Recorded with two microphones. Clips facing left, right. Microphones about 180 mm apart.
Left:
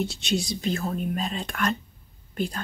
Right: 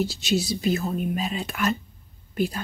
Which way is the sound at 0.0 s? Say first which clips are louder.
Right 3 dB; 5° right (ahead or behind).